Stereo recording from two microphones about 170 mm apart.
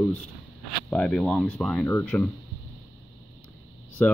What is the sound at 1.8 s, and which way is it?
Speech, 15° left (ahead or behind).